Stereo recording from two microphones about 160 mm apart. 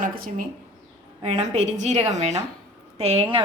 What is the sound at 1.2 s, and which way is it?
A woman's voice, 40° right (ahead or behind).